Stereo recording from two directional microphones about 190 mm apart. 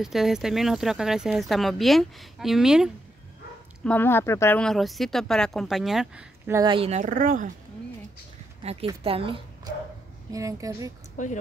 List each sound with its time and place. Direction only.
0.0 s speech: centre (ahead or behind)
3.8 s speech: 10° left (ahead or behind); by 6.6 s 10° right (ahead or behind)
6.6 s speech: 25° right (ahead or behind)
7.0 s speech: 45° right (ahead or behind)
8.6 s speech: 30° right (ahead or behind)
10.3 s speech: 15° right (ahead or behind)
11.2 s speech: 40° left (ahead or behind)